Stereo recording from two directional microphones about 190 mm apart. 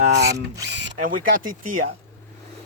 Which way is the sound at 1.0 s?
45° right (ahead or behind).